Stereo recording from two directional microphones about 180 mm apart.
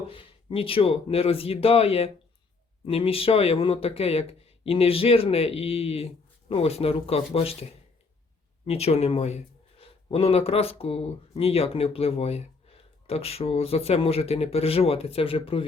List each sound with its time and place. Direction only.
0.1 s speech: 30° left (ahead or behind)
8.6 s speech: 35° left (ahead or behind)